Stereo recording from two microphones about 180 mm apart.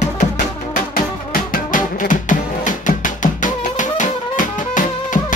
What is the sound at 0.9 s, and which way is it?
Music, 50° left (ahead or behind).